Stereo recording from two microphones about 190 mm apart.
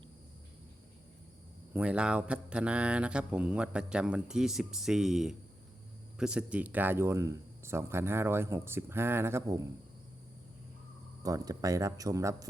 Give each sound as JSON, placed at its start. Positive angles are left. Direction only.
{"t": 1.7, "sound": "mantra", "side_deg": -5}
{"t": 6.1, "sound": "speech", "side_deg": -5}
{"t": 11.2, "sound": "speech", "side_deg": -20}